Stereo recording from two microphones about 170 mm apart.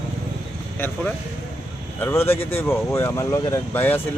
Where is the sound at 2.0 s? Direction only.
15° left (ahead or behind).